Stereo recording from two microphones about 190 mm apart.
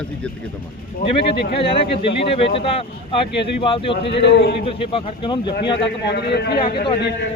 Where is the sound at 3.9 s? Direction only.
65° left (ahead or behind).